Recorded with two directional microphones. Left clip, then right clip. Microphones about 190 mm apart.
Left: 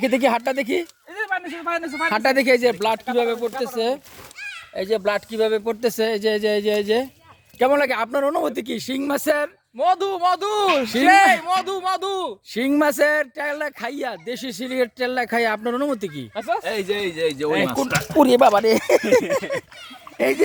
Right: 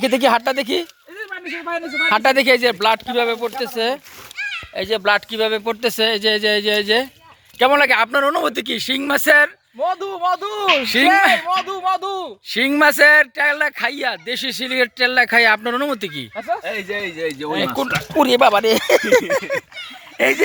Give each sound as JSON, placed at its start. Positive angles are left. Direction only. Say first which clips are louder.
{"t": 0.0, "sound": "speech", "louder": "right 4 dB", "side_deg": 0}
{"t": 2.0, "sound": "speech", "louder": "right 4 dB", "side_deg": 10}
{"t": 4.4, "sound": "cat", "louder": "right 8 dB", "side_deg": 80}
{"t": 4.7, "sound": "speech", "louder": "right 4 dB", "side_deg": 0}
{"t": 9.7, "sound": "a man's voice", "louder": "left 2 dB", "side_deg": 25}
{"t": 10.8, "sound": "speech", "louder": "even", "side_deg": 5}
{"t": 11.4, "sound": "a man's voice", "louder": "right 2 dB", "side_deg": 25}
{"t": 12.5, "sound": "speech", "louder": "right 6 dB", "side_deg": 10}
{"t": 16.6, "sound": "speech", "louder": "even", "side_deg": 45}
{"t": 17.7, "sound": "speech", "louder": "right 1 dB", "side_deg": 10}
{"t": 18.2, "sound": "speech", "louder": "right 1 dB", "side_deg": 20}